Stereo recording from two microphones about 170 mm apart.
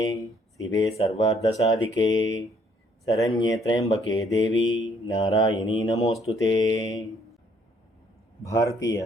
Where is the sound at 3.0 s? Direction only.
20° left (ahead or behind).